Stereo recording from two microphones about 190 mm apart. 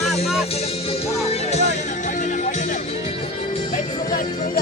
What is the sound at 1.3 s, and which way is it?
Music, 35° left (ahead or behind).